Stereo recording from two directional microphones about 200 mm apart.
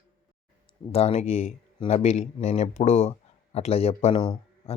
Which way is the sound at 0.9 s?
30° left (ahead or behind).